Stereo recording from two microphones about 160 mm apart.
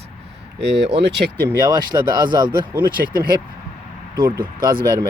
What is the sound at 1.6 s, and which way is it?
Speech, 25° right (ahead or behind).